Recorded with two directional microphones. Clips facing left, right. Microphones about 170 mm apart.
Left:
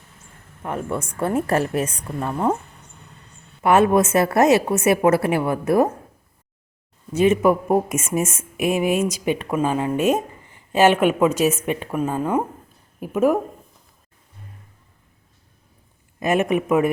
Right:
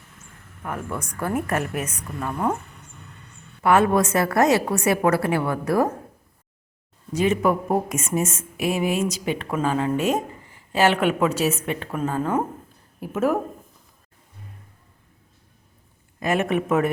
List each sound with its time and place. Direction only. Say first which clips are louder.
0.6 s a woman's voice: left 4 dB; 25° left (ahead or behind)
3.6 s a woman's voice: left 2 dB; 20° left (ahead or behind)
7.2 s a woman's voice: left 4 dB; 20° left (ahead or behind)
16.2 s speech: left 3 dB; 20° left (ahead or behind)